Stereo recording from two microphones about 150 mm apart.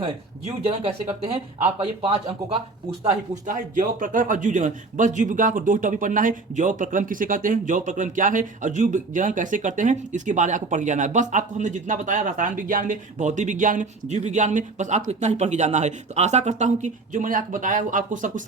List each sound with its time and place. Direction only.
0.6 s a man's voice: 45° right (ahead or behind)
3.4 s a man's voice: 60° right (ahead or behind)